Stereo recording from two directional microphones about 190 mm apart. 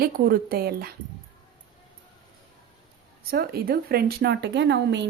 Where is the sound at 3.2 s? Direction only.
55° right (ahead or behind).